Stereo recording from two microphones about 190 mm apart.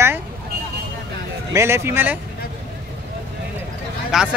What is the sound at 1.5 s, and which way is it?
Speech, 15° right (ahead or behind).